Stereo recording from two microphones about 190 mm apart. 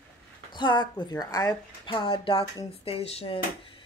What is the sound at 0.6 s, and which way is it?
A woman's voice, 25° left (ahead or behind).